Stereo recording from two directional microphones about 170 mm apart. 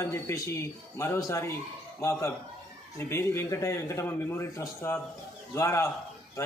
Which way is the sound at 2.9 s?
15° left (ahead or behind).